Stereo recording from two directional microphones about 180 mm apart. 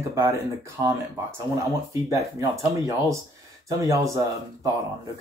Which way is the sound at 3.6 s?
15° right (ahead or behind).